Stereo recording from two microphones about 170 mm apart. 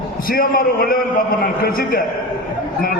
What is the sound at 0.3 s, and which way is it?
A man's voice, 60° left (ahead or behind).